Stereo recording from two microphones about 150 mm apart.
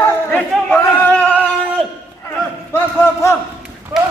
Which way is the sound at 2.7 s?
20° left (ahead or behind).